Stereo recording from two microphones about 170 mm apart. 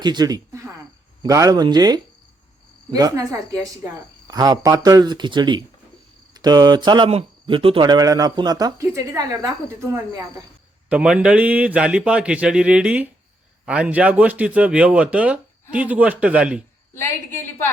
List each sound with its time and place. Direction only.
0.0 s speech: 25° right (ahead or behind)
10.8 s a man's voice: 5° right (ahead or behind)
16.9 s a woman's voice: 15° left (ahead or behind)